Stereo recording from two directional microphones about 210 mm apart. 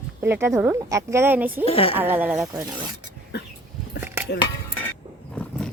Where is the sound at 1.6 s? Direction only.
25° left (ahead or behind).